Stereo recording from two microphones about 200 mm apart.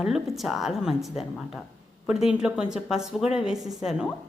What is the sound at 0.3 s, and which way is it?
Speech, centre (ahead or behind).